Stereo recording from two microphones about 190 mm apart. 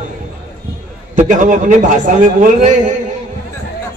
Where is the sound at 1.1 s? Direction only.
40° right (ahead or behind).